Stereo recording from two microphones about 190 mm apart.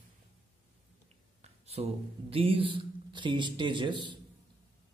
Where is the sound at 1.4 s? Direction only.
35° right (ahead or behind).